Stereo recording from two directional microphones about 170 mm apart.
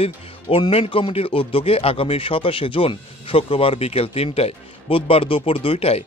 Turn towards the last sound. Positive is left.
turn(degrees=35)  # may be behind; listen again after turning